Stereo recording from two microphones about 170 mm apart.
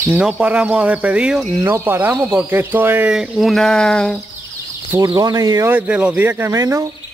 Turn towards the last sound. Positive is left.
turn(degrees=-20)  # may be behind; listen again after turning